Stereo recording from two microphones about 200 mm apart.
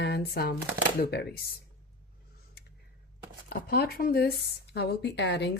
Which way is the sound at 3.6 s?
50° left (ahead or behind).